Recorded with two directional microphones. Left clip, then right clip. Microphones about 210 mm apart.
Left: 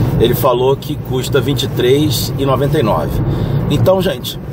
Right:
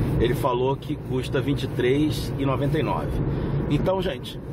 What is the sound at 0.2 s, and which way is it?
Speech, 15° left (ahead or behind).